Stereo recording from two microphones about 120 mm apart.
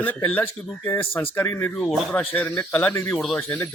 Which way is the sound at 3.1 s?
5° left (ahead or behind).